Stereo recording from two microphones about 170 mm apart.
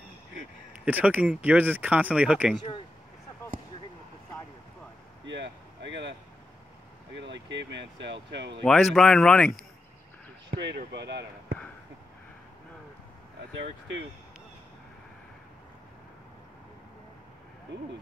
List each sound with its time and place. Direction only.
0.7 s speech: 10° right (ahead or behind)
5.2 s vehicle: 90° right
7.2 s speech: 90° right
8.6 s speech: 5° left (ahead or behind)
10.5 s basketball bounce: 90° right
10.9 s speech: 90° right